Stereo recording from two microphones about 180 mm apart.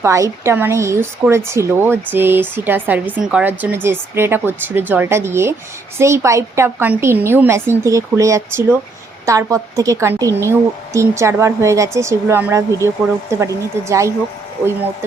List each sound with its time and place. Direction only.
0.0 s a woman's voice: 15° right (ahead or behind)